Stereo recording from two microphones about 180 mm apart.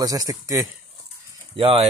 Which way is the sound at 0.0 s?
20° right (ahead or behind).